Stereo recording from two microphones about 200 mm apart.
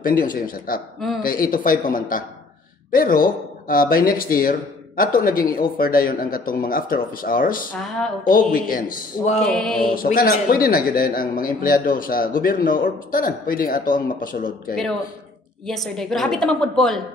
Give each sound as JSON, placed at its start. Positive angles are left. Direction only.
{"t": 0.0, "sound": "a man's voice", "side_deg": 45}
{"t": 9.4, "sound": "a woman's voice", "side_deg": 5}
{"t": 9.9, "sound": "a man's voice", "side_deg": 45}
{"t": 15.6, "sound": "a woman's voice", "side_deg": 0}